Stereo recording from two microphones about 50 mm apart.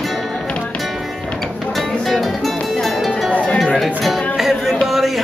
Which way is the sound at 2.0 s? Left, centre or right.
Centre.